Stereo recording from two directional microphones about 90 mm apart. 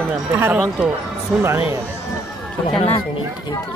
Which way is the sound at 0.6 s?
5° right (ahead or behind).